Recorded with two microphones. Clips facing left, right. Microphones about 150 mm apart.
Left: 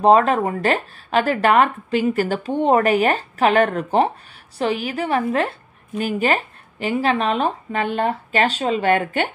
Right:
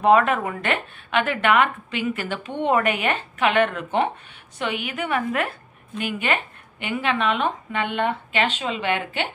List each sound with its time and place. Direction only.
0.0 s speech: 30° left (ahead or behind)